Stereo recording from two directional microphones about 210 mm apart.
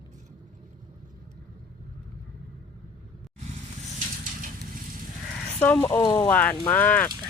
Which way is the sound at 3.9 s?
40° right (ahead or behind).